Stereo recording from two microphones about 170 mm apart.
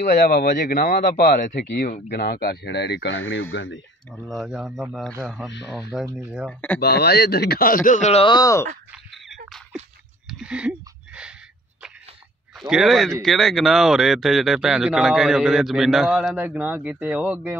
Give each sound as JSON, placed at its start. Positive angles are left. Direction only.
{"t": 0.0, "sound": "a man's voice", "side_deg": 60}
{"t": 4.1, "sound": "speech", "side_deg": 5}
{"t": 6.0, "sound": "speech", "side_deg": -15}
{"t": 6.8, "sound": "a man's voice", "side_deg": 75}
{"t": 8.9, "sound": "a sound", "side_deg": 0}
{"t": 12.5, "sound": "speech", "side_deg": 0}